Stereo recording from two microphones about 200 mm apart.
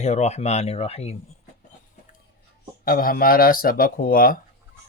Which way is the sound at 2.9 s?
45° left (ahead or behind).